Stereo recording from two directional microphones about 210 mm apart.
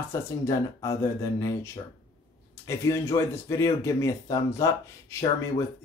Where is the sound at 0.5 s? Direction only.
15° left (ahead or behind).